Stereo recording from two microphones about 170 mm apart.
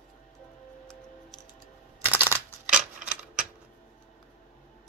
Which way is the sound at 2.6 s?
5° right (ahead or behind).